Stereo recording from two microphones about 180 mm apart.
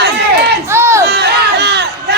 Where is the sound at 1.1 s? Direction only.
65° right (ahead or behind).